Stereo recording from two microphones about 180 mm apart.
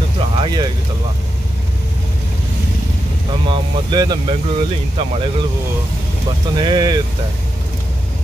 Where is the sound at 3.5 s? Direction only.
25° right (ahead or behind).